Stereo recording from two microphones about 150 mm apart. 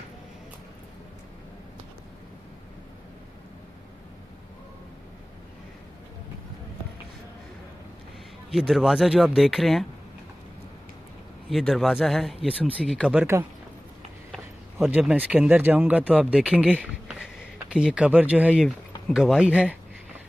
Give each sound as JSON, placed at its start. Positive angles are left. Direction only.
{"t": 8.5, "sound": "speech", "side_deg": 0}
{"t": 11.4, "sound": "speech", "side_deg": 0}
{"t": 14.3, "sound": "speech", "side_deg": 0}